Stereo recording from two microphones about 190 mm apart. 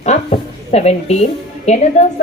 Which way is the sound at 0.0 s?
35° left (ahead or behind).